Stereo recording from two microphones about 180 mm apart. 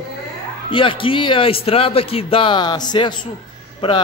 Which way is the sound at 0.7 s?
30° left (ahead or behind).